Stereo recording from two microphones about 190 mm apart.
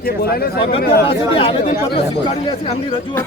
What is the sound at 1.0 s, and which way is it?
Speech, 30° left (ahead or behind).